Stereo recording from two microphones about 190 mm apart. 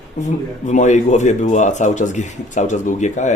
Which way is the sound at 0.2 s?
40° left (ahead or behind).